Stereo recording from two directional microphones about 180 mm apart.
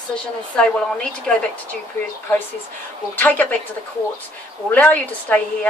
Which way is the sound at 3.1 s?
10° left (ahead or behind).